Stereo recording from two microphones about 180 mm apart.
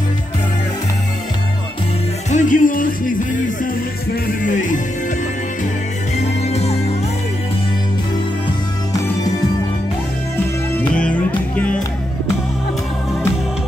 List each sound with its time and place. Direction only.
2.3 s music: 45° left (ahead or behind)
6.5 s music: 35° left (ahead or behind)
10.7 s music: 10° left (ahead or behind)